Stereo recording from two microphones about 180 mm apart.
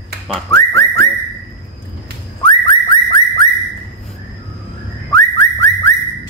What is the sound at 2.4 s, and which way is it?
Car alarm, 25° left (ahead or behind).